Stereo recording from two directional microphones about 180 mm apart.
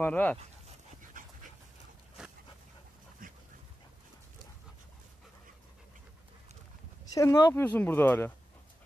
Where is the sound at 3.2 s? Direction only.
50° right (ahead or behind).